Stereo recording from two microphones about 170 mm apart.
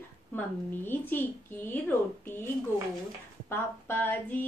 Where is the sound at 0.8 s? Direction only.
10° left (ahead or behind).